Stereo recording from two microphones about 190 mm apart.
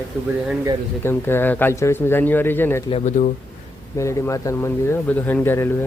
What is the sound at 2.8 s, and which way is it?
Speech, 35° left (ahead or behind).